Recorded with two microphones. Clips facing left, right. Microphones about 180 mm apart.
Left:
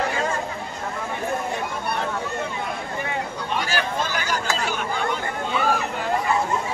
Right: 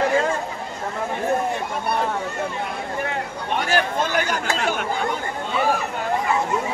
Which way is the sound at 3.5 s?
55° right (ahead or behind).